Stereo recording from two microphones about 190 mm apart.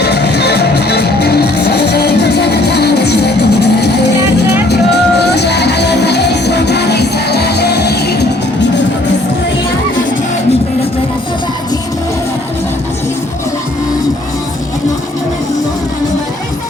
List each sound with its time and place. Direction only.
0.0 s music: 60° left (ahead or behind)